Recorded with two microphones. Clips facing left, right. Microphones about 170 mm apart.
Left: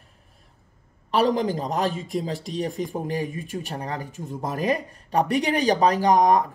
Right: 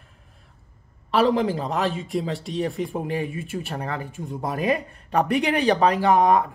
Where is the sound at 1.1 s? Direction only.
40° left (ahead or behind).